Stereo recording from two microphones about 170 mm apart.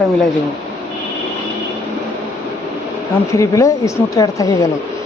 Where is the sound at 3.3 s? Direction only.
20° left (ahead or behind).